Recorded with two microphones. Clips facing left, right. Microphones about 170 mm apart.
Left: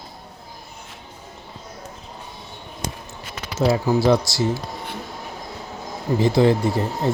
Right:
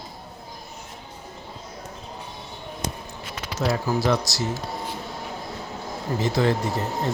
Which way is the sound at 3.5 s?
25° left (ahead or behind).